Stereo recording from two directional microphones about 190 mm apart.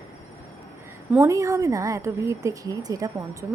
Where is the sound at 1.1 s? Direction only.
15° right (ahead or behind).